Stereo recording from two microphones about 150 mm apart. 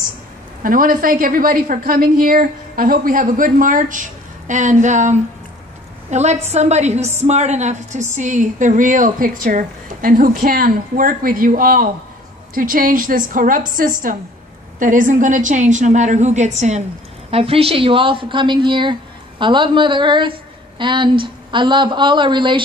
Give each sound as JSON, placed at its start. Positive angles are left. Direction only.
{"t": 0.7, "sound": "a woman's voice", "side_deg": -70}
{"t": 17.3, "sound": "a woman's voice", "side_deg": -40}